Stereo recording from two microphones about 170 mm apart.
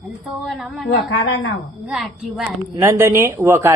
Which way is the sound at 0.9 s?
80° left.